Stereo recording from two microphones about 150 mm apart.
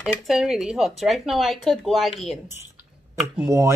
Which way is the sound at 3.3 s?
20° right (ahead or behind).